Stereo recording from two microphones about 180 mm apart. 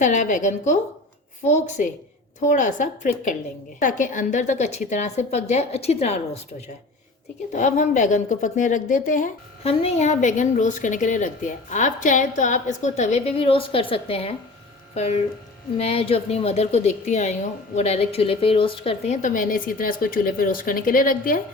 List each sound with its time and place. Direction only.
0.0 s a woman's voice: 45° left (ahead or behind)
7.5 s a woman's voice: 45° left (ahead or behind)